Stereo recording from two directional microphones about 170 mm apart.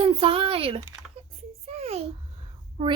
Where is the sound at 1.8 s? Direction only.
40° right (ahead or behind).